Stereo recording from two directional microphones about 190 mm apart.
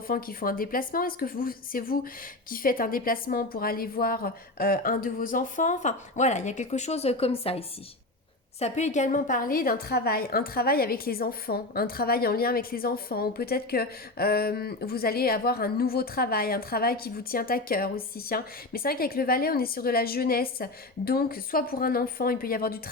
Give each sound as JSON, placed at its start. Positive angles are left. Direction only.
{"t": 0.1, "sound": "a woman's voice", "side_deg": 50}